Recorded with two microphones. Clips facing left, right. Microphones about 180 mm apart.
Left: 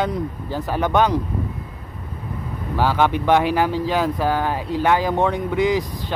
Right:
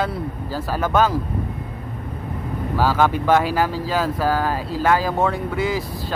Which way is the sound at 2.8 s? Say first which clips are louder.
Even; 15° left (ahead or behind).